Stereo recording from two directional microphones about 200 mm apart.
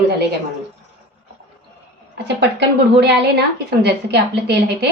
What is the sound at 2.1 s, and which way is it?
A woman's voice, 60° right (ahead or behind).